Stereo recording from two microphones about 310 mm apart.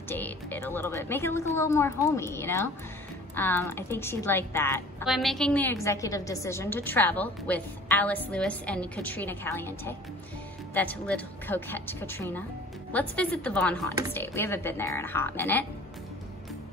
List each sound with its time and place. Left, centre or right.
0.1 s a woman's voice: centre